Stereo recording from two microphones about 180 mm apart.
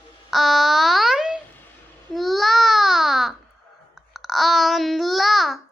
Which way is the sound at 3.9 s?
Centre (ahead or behind).